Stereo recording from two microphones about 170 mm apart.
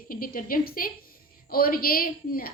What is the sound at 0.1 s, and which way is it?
A woman's voice, 55° left (ahead or behind).